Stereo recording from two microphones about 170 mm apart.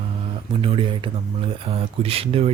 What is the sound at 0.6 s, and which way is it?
Speech, 30° right (ahead or behind).